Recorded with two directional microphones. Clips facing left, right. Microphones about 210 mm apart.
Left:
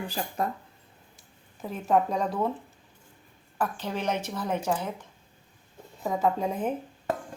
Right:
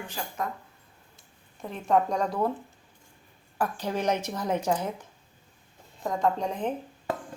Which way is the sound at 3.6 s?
10° right (ahead or behind).